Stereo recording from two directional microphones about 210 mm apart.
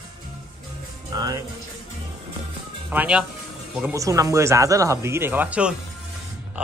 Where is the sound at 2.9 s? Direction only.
5° right (ahead or behind).